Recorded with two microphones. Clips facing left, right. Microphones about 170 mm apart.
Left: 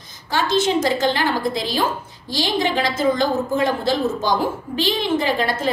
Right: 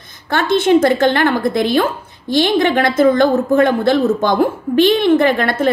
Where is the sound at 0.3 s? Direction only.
60° right (ahead or behind).